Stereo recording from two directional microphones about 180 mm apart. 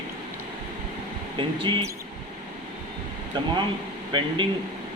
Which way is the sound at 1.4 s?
30° right (ahead or behind).